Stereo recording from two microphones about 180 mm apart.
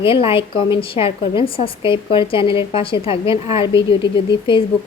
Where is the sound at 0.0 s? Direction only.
30° left (ahead or behind).